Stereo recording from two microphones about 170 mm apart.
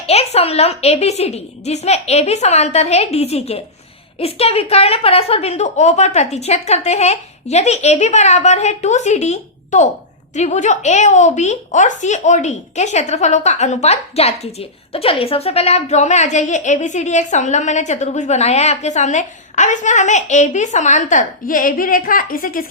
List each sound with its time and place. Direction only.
0.0 s a woman's voice: 40° left (ahead or behind); by 22.6 s 55° left (ahead or behind)